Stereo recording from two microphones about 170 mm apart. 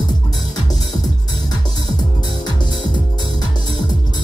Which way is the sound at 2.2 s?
25° left (ahead or behind).